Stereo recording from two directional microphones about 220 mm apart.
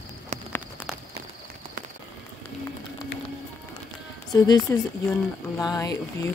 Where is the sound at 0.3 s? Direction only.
30° right (ahead or behind).